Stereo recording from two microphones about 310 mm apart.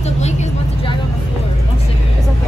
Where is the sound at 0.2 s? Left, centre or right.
Left.